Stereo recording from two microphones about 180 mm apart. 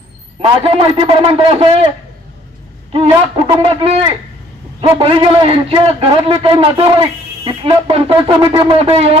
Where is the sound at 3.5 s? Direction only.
35° right (ahead or behind).